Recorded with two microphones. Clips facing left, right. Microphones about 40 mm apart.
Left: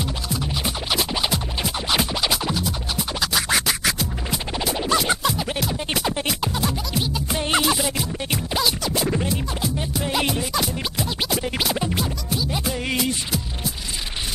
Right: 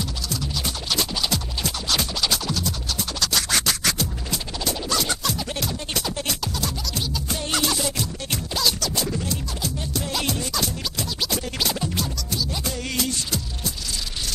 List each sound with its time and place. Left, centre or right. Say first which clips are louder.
0.0 s music: left 3 dB; left
4.7 s music: left 6 dB; left
9.0 s music: left 5 dB; left
9.3 s music: left 4 dB; centre